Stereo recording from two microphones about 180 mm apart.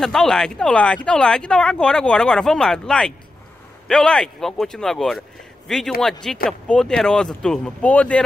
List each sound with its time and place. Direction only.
0.0 s speech: centre (ahead or behind)